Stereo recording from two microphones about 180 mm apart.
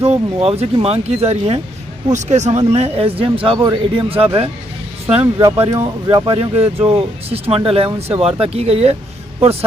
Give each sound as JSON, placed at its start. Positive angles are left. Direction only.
{"t": 0.0, "sound": "speech", "side_deg": -35}
{"t": 5.6, "sound": "speech", "side_deg": -30}